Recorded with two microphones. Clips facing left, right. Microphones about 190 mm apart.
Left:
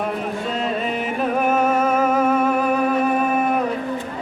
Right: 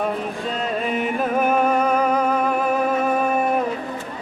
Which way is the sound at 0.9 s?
Centre (ahead or behind).